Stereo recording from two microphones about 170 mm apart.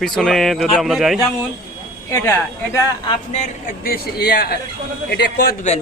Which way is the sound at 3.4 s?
55° left (ahead or behind).